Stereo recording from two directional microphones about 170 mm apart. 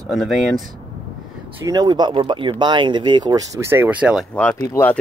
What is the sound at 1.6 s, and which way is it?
Speech, 20° right (ahead or behind).